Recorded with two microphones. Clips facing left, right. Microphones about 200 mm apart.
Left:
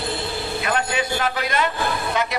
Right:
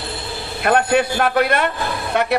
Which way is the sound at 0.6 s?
55° right (ahead or behind).